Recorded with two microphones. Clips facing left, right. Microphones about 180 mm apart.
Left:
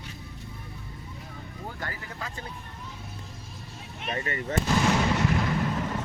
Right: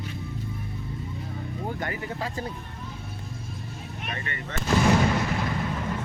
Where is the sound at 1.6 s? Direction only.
25° right (ahead or behind).